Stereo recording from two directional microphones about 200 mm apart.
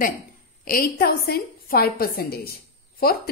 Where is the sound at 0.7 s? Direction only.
50° left (ahead or behind).